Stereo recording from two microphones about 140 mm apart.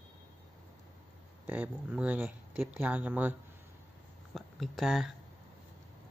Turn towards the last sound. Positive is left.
turn(degrees=0)  # may be behind; listen again after turning